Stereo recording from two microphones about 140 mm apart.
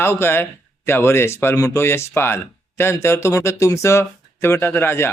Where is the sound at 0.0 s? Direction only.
15° left (ahead or behind).